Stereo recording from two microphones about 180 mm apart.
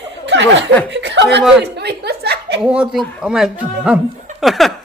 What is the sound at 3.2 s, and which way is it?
Speech, centre (ahead or behind).